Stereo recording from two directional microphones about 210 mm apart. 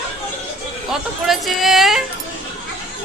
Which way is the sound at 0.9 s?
Centre (ahead or behind).